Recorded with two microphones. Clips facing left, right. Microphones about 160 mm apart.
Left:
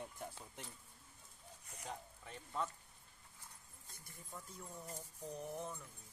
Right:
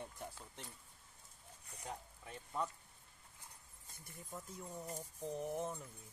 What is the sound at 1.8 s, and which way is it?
Speech, 10° right (ahead or behind).